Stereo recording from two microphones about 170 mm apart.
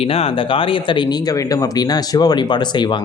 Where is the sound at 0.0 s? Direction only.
35° left (ahead or behind).